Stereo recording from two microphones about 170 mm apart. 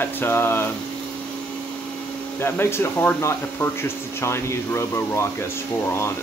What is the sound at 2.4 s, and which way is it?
Speech, 15° left (ahead or behind).